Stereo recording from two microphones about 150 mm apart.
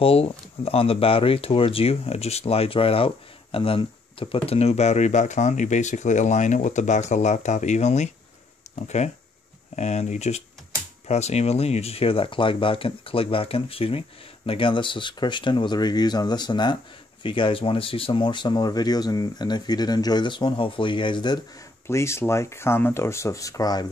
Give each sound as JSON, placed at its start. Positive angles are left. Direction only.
{"t": 0.0, "sound": "speech", "side_deg": 40}
{"t": 21.8, "sound": "speech", "side_deg": 20}